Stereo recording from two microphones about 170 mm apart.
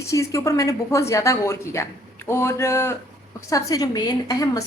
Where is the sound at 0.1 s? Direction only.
20° left (ahead or behind).